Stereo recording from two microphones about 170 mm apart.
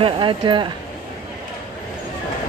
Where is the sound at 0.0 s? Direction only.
30° right (ahead or behind).